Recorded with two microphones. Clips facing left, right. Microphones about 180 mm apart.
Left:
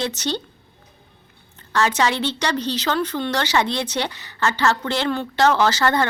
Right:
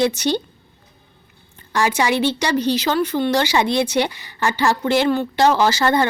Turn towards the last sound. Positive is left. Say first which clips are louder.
# right 2 dB
turn(degrees=-10)  # may be behind; listen again after turning